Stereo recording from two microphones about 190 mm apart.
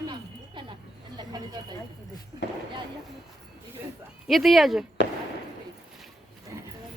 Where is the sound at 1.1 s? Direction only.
20° right (ahead or behind).